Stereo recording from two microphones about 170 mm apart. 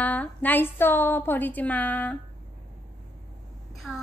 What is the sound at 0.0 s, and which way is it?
A woman's voice, 10° left (ahead or behind).